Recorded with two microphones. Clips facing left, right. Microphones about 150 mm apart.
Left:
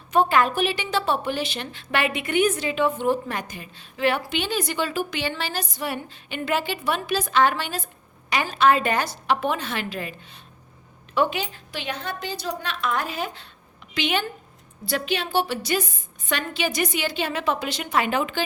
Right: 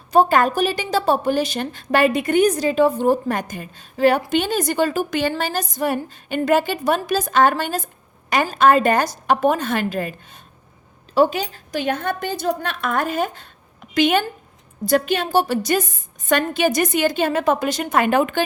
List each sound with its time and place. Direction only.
0.1 s a woman's voice: 40° right (ahead or behind)